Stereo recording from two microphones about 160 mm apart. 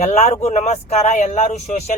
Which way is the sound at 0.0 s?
45° left (ahead or behind).